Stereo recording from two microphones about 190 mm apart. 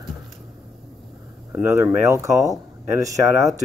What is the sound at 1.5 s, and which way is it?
Speech, 10° right (ahead or behind).